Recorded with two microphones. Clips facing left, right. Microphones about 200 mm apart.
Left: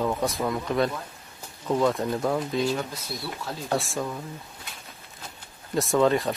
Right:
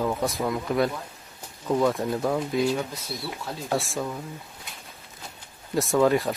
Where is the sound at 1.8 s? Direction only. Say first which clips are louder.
Even; centre (ahead or behind).